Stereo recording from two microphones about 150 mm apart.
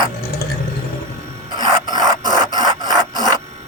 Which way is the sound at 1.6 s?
25° right (ahead or behind).